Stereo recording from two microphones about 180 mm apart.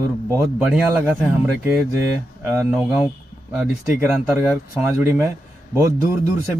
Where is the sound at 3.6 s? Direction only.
10° right (ahead or behind).